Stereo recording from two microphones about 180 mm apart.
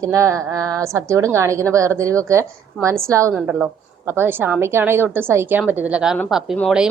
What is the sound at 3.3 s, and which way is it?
A woman's voice, 5° right (ahead or behind).